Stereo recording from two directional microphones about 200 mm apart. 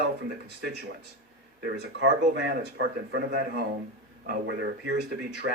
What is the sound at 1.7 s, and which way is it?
Speech, 60° right (ahead or behind).